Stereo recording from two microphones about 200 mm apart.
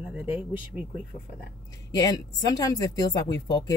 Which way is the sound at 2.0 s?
20° left (ahead or behind).